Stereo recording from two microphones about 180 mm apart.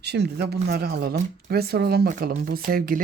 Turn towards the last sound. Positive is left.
turn(degrees=-55)  # may be behind; listen again after turning